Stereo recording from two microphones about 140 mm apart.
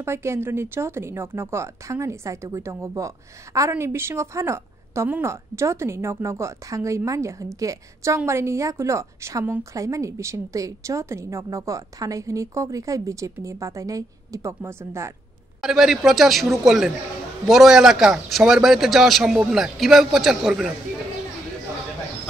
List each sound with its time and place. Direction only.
0.0 s a woman's voice: 20° right (ahead or behind)
15.6 s a man's voice: 5° right (ahead or behind)